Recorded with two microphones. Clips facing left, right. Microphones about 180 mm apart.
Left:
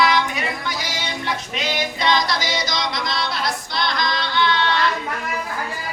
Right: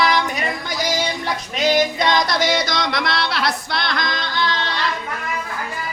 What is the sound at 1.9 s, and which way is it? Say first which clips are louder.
Music: right 2 dB; 55° right (ahead or behind).